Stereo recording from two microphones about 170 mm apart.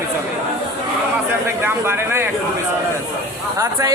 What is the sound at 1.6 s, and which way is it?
Speech, 15° right (ahead or behind).